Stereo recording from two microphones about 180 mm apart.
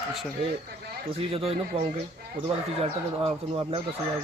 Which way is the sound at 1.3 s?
30° right (ahead or behind).